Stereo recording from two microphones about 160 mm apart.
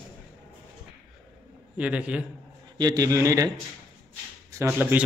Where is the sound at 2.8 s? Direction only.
25° right (ahead or behind).